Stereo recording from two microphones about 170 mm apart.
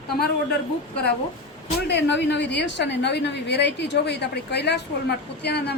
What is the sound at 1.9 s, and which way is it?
A woman's voice, 90° left.